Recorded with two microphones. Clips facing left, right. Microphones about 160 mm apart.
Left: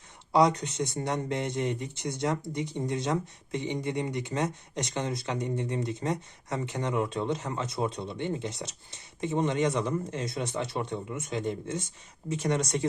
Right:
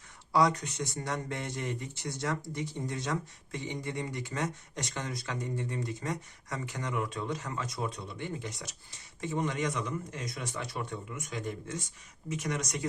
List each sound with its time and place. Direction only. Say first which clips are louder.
0.3 s speech: left 4 dB; 20° left (ahead or behind)